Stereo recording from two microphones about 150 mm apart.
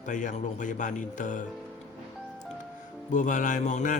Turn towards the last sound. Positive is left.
turn(degrees=55)  # may be behind; listen again after turning